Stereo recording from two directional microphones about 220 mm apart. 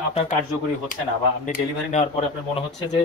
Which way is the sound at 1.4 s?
35° left (ahead or behind).